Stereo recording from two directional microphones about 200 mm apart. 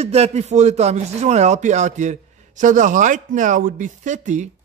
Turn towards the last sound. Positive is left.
turn(degrees=-35)  # may be behind; listen again after turning